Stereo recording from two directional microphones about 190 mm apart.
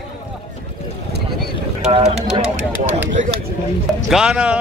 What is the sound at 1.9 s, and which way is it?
Speech, 30° right (ahead or behind).